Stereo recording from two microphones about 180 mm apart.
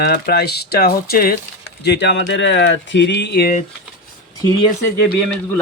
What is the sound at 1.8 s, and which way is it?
Speech, 70° left (ahead or behind).